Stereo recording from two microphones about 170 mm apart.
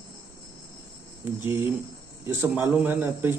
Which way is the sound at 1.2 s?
15° right (ahead or behind).